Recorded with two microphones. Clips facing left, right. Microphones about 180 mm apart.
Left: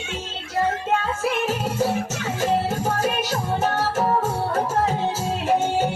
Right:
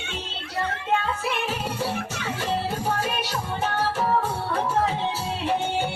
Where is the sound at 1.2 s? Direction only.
45° left (ahead or behind).